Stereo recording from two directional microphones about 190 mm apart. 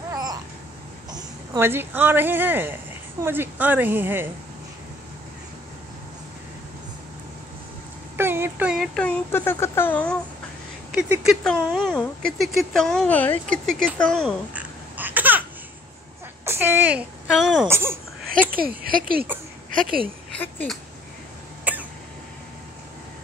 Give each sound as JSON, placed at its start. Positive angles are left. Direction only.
{"t": 0.1, "sound": "a sound", "side_deg": -20}
{"t": 1.1, "sound": "speech", "side_deg": -15}
{"t": 8.2, "sound": "a sound", "side_deg": -10}
{"t": 8.9, "sound": "speech", "side_deg": 10}
{"t": 10.9, "sound": "speech", "side_deg": -5}
{"t": 14.5, "sound": "babbling", "side_deg": -10}
{"t": 16.4, "sound": "speech", "side_deg": -10}
{"t": 17.6, "sound": "speech", "side_deg": -15}
{"t": 18.9, "sound": "speech", "side_deg": -50}
{"t": 20.3, "sound": "speech", "side_deg": 10}
{"t": 21.7, "sound": "cough", "side_deg": -10}